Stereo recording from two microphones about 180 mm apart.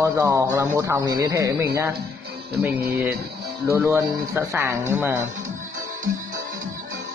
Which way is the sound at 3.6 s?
15° right (ahead or behind).